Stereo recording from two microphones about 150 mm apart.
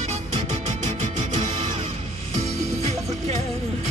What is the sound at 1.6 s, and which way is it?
Music, 45° right (ahead or behind).